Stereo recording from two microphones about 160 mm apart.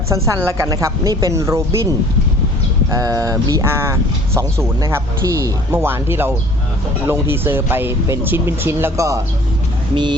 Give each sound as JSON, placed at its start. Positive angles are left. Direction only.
{"t": 0.1, "sound": "a woman's voice", "side_deg": -20}
{"t": 2.9, "sound": "a woman's voice", "side_deg": -20}